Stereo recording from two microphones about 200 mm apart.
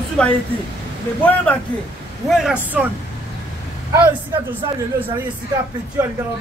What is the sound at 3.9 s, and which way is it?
Speech, 15° right (ahead or behind).